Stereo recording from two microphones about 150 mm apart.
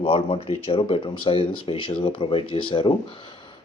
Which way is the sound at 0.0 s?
40° left (ahead or behind).